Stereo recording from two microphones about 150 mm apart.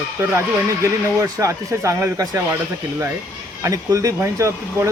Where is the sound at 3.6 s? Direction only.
20° right (ahead or behind).